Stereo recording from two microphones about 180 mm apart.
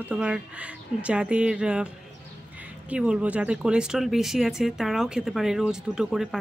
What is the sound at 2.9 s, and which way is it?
Speech, 5° right (ahead or behind).